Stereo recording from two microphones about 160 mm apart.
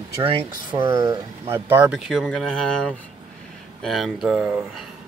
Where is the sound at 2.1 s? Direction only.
5° left (ahead or behind).